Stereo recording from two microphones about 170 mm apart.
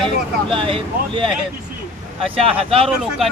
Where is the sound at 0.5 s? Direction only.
30° right (ahead or behind).